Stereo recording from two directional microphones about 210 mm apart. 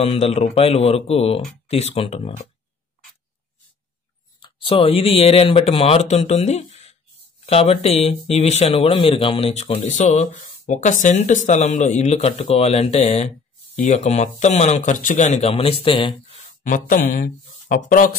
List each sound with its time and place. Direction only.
0.0 s speech: 30° left (ahead or behind)
4.4 s speech: 25° left (ahead or behind)
16.6 s speech: 40° left (ahead or behind)